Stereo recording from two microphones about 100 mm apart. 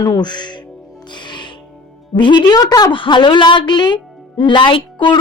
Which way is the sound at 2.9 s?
55° left (ahead or behind).